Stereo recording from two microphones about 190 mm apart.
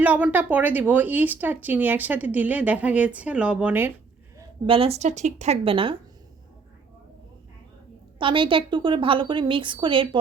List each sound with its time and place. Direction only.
0.0 s speech: 10° right (ahead or behind)
4.6 s a woman's voice: 30° right (ahead or behind)
8.2 s speech: 25° right (ahead or behind)